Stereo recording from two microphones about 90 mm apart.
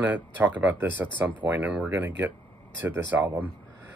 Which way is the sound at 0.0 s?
20° right (ahead or behind).